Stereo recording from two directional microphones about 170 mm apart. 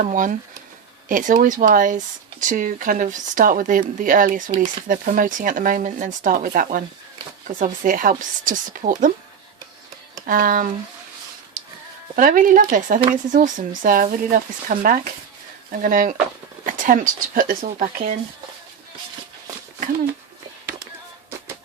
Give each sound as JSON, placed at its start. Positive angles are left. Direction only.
{"t": 0.0, "sound": "speech", "side_deg": -50}
{"t": 10.2, "sound": "speech", "side_deg": -55}
{"t": 12.1, "sound": "speech", "side_deg": -50}